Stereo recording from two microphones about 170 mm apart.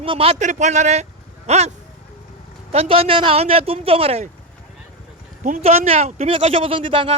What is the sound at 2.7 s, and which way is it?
Speech, 35° right (ahead or behind).